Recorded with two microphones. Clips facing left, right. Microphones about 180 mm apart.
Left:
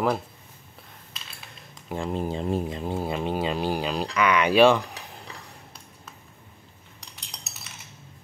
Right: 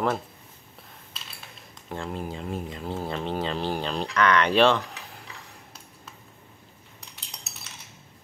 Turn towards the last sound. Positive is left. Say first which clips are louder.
# left 1 dB
turn(degrees=0)  # may be behind; listen again after turning